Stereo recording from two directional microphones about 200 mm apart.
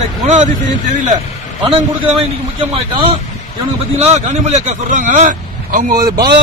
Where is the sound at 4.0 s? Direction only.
35° right (ahead or behind).